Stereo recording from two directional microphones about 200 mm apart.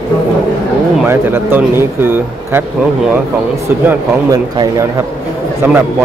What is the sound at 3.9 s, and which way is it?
Speech, 15° right (ahead or behind).